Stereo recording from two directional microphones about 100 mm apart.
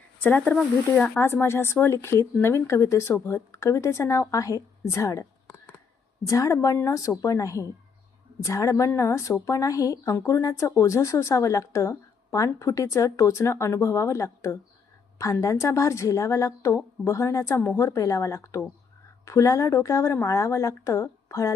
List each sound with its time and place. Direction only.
0.2 s speech: 15° left (ahead or behind)